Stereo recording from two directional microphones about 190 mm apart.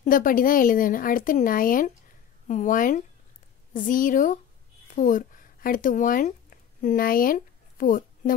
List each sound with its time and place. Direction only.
0.0 s speech: 45° left (ahead or behind)